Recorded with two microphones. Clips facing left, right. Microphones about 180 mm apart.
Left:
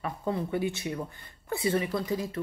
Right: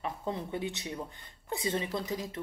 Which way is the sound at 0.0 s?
20° right (ahead or behind).